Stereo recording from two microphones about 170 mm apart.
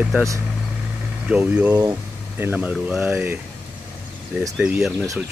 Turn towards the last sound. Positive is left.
turn(degrees=-5)  # may be behind; listen again after turning